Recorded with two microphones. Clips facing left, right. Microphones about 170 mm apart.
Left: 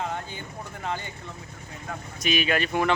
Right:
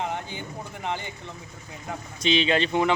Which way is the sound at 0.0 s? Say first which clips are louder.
Right 1 dB; 20° right (ahead or behind).